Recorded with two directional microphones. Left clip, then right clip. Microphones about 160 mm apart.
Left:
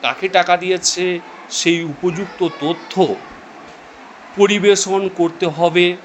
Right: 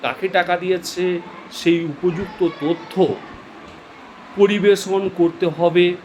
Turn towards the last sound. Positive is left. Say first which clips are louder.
# left 2 dB
turn(degrees=25)  # may be behind; listen again after turning